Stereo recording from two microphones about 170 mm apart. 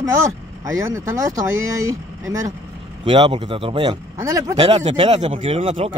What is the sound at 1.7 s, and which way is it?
Speech, 20° right (ahead or behind).